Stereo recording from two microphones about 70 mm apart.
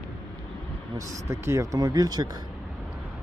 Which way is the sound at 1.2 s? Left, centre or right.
Right.